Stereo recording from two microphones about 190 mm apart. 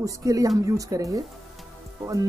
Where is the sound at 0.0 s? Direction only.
15° right (ahead or behind).